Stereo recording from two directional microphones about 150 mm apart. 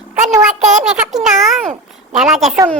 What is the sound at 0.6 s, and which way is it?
Speech, 50° right (ahead or behind).